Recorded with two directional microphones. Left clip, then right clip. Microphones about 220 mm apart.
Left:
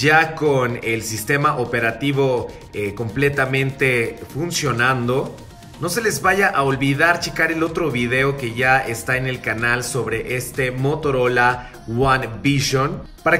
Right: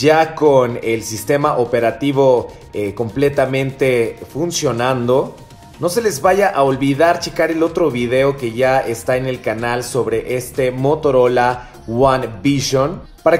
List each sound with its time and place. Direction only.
0.0 s a man's voice: 15° right (ahead or behind)